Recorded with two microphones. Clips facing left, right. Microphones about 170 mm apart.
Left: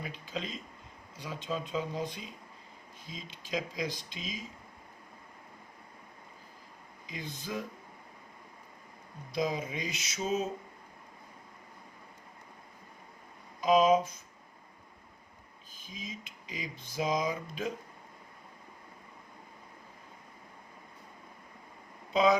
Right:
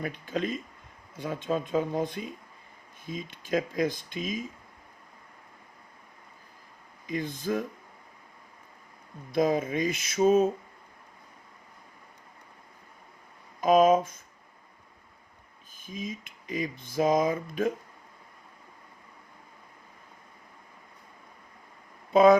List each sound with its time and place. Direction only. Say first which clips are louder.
0.0 s speech: right 8 dB; 55° right (ahead or behind)
7.1 s speech: right 9 dB; 50° right (ahead or behind)
9.3 s speech: right 8 dB; 50° right (ahead or behind)
13.6 s speech: right 4 dB; 50° right (ahead or behind)
15.7 s speech: right 8 dB; 50° right (ahead or behind)
22.1 s speech: right 8 dB; 50° right (ahead or behind)